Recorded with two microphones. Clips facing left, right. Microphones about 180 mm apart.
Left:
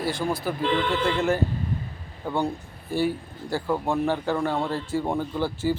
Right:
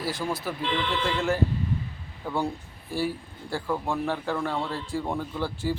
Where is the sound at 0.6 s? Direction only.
50° left (ahead or behind).